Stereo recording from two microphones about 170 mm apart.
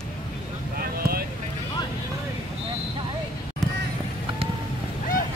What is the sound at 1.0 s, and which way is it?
Boat, 60° right (ahead or behind).